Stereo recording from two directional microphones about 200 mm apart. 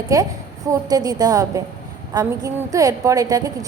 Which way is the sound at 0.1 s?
15° right (ahead or behind).